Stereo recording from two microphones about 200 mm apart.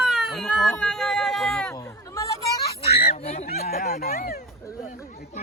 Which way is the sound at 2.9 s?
30° left (ahead or behind).